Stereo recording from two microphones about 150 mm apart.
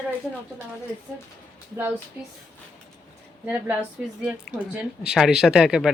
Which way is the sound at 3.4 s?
10° right (ahead or behind).